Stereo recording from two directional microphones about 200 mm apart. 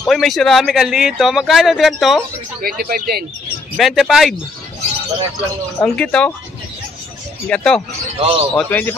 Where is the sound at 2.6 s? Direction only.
50° right (ahead or behind).